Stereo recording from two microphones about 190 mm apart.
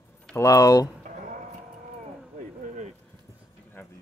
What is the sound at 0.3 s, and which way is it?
Speech, 15° left (ahead or behind).